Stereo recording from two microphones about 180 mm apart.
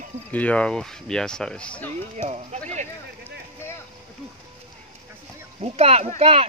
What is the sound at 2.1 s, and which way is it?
Speech, 40° right (ahead or behind).